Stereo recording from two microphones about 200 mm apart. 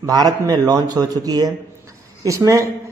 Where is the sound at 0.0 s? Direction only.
20° right (ahead or behind).